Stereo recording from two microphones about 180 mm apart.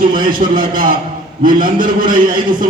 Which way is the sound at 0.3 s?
50° right (ahead or behind).